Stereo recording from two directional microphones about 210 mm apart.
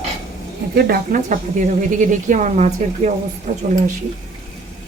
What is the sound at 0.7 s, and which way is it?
A woman's voice, 45° right (ahead or behind).